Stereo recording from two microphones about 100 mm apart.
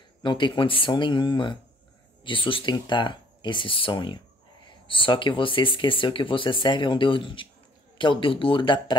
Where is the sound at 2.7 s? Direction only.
50° left (ahead or behind).